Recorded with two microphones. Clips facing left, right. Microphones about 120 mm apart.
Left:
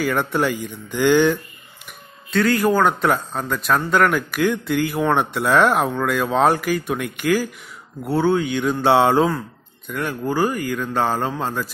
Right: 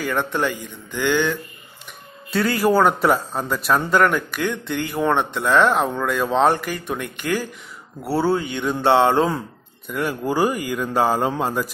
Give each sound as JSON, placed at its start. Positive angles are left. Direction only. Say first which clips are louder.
{"t": 0.0, "sound": "speech", "louder": "left 2 dB", "side_deg": 5}
{"t": 2.3, "sound": "speech", "louder": "even", "side_deg": -5}
{"t": 9.8, "sound": "mantra", "louder": "right 1 dB", "side_deg": -5}